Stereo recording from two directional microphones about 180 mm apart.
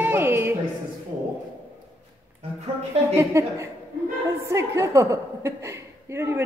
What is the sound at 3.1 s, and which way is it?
A woman's voice, 15° right (ahead or behind).